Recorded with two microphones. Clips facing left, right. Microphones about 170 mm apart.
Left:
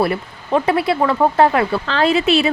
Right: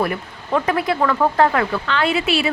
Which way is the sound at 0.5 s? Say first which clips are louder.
Left 3 dB; 25° left (ahead or behind).